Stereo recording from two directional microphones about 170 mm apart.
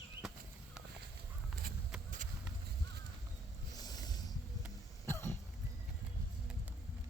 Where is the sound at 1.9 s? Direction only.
5° right (ahead or behind).